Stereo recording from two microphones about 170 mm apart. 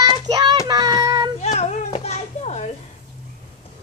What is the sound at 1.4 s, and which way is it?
Children playing, 40° left (ahead or behind).